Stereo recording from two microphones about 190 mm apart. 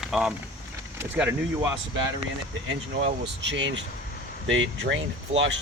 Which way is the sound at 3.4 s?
70° right (ahead or behind).